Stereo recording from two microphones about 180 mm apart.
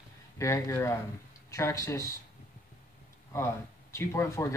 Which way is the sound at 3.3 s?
15° left (ahead or behind).